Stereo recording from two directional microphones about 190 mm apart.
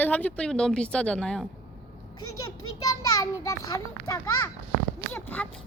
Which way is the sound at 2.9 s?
20° left (ahead or behind).